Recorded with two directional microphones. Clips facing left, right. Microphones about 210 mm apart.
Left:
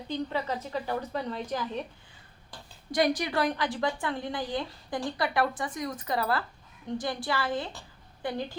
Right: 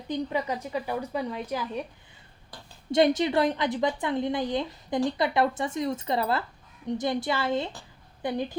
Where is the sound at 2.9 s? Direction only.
25° right (ahead or behind).